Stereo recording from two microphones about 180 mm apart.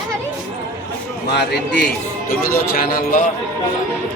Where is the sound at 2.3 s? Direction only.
55° left (ahead or behind).